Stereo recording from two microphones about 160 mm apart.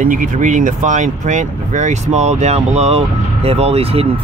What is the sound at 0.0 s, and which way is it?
Speech, 55° right (ahead or behind).